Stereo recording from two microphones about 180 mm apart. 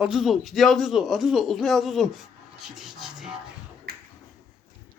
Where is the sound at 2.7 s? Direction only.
Centre (ahead or behind).